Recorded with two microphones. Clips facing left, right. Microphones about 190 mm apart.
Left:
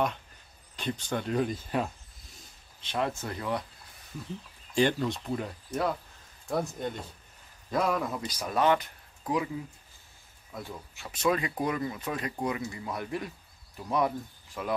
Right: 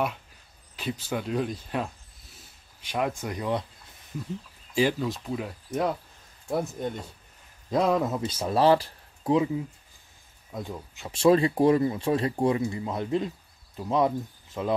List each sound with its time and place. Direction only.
0.7 s speech: 5° right (ahead or behind)
2.3 s a sound: 10° right (ahead or behind)
4.7 s speech: 5° right (ahead or behind)
7.7 s speech: 25° right (ahead or behind)
10.5 s speech: 20° right (ahead or behind)